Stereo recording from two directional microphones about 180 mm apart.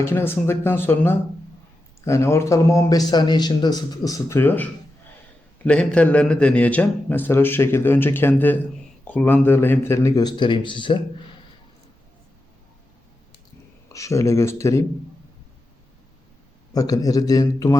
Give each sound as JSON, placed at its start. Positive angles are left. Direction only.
{"t": 0.0, "sound": "a man's voice", "side_deg": 15}
{"t": 13.9, "sound": "a man's voice", "side_deg": 15}
{"t": 16.7, "sound": "a man's voice", "side_deg": 20}